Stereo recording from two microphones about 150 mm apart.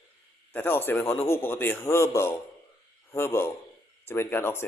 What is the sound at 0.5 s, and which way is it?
Speech, 15° left (ahead or behind).